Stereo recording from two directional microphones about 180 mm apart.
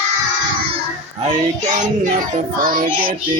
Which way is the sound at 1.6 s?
45° right (ahead or behind).